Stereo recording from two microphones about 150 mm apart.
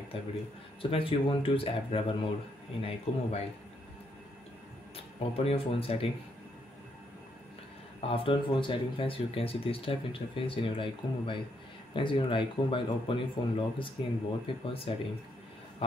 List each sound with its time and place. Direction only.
0.1 s speech: 40° left (ahead or behind)
4.9 s speech: 40° left (ahead or behind)
8.0 s speech: 40° left (ahead or behind)